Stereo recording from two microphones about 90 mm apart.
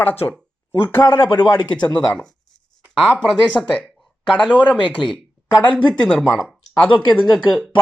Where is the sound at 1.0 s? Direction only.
50° left (ahead or behind).